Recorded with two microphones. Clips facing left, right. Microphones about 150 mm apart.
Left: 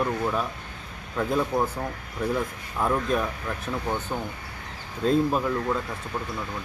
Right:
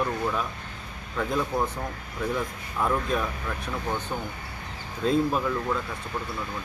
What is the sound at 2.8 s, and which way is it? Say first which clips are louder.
Speech: left 1 dB; 10° left (ahead or behind).